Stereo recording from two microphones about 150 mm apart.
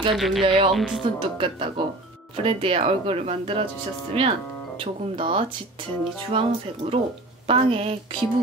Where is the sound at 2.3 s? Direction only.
35° right (ahead or behind).